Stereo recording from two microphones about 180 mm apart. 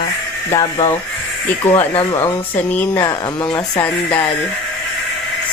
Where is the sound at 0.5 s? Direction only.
15° left (ahead or behind).